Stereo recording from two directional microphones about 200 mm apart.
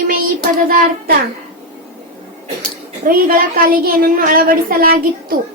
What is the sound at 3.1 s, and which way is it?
Child singing, 45° right (ahead or behind).